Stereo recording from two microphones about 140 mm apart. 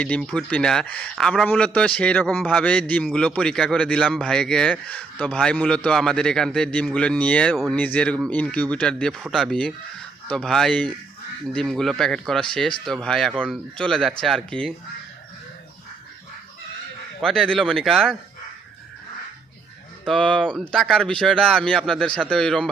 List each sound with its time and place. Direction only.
0.0 s a man's voice: 10° left (ahead or behind)
17.2 s a man's voice: 5° left (ahead or behind)
20.1 s a man's voice: 5° left (ahead or behind)